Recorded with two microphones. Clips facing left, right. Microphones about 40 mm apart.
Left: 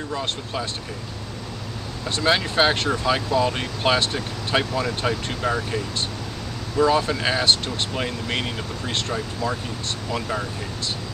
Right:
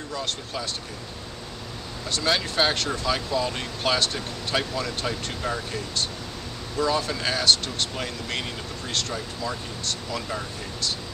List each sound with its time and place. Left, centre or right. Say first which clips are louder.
0.1 s speech: left 2 dB; left
2.0 s speech: left 4 dB; left